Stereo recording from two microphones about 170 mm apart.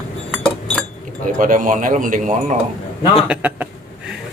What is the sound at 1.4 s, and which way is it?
A man's voice, 50° right (ahead or behind).